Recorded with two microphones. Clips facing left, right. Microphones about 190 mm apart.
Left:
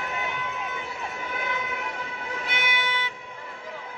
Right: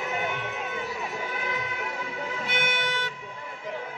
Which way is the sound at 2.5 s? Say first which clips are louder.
Right 1 dB; 50° right (ahead or behind).